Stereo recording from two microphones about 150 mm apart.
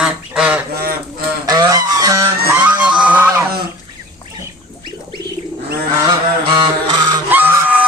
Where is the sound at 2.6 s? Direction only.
10° right (ahead or behind).